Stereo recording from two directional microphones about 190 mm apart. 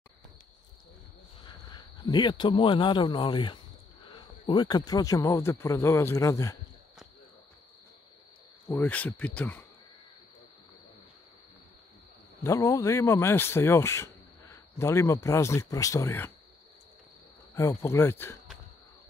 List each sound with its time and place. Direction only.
1.7 s speech: 25° left (ahead or behind)
8.6 s speech: 10° left (ahead or behind)
12.4 s speech: 15° left (ahead or behind)
17.6 s speech: 15° left (ahead or behind)